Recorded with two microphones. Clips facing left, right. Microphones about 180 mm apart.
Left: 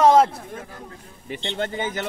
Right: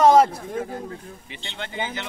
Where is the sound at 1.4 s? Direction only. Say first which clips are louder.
Left 5 dB; 45° left (ahead or behind).